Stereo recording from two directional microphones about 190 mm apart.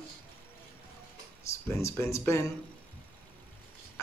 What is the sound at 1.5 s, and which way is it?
Speech, 15° left (ahead or behind).